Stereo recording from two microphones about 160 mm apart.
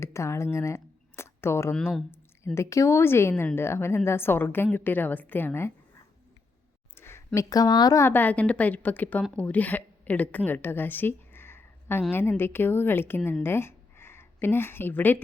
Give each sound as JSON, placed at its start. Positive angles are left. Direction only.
{"t": 0.0, "sound": "speech", "side_deg": 15}
{"t": 1.7, "sound": "speech", "side_deg": 5}
{"t": 2.6, "sound": "a woman's voice", "side_deg": 20}
{"t": 6.9, "sound": "a woman's voice", "side_deg": 15}